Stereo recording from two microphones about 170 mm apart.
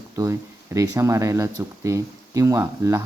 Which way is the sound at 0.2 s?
20° right (ahead or behind).